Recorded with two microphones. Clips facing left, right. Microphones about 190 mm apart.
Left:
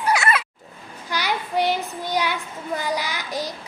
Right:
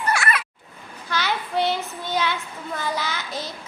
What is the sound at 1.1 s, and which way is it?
Child singing, 15° left (ahead or behind).